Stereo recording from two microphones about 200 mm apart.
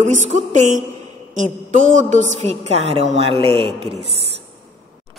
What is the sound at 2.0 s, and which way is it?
A woman's voice, 35° right (ahead or behind).